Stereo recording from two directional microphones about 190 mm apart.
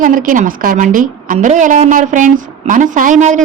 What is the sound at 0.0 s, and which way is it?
A woman's voice, 45° right (ahead or behind).